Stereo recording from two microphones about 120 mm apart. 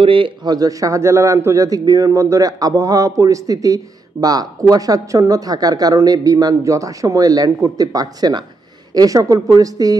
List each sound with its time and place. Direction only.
0.0 s a man's voice: 50° right (ahead or behind); by 9.9 s 30° right (ahead or behind)